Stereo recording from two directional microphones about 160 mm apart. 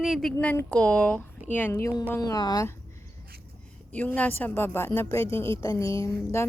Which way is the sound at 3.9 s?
10° left (ahead or behind).